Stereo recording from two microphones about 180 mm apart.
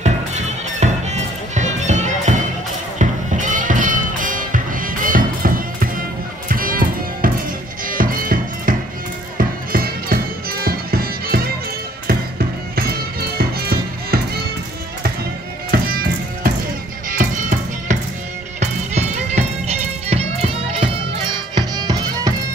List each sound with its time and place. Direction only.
0.0 s music: 40° right (ahead or behind); by 14.2 s 60° right (ahead or behind)
15.7 s music: 55° right (ahead or behind)
17.1 s music: 45° right (ahead or behind); by 22.3 s 20° right (ahead or behind)